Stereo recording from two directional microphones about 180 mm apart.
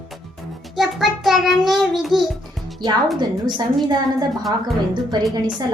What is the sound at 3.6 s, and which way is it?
A woman's voice, 25° right (ahead or behind).